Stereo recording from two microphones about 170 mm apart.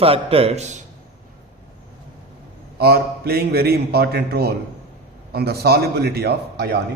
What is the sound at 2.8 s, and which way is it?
A man's voice, 65° right (ahead or behind).